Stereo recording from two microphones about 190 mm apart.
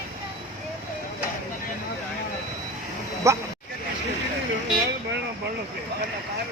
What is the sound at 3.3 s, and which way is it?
Speech, 15° right (ahead or behind).